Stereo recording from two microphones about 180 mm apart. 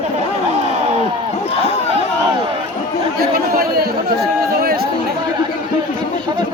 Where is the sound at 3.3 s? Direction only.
55° right (ahead or behind).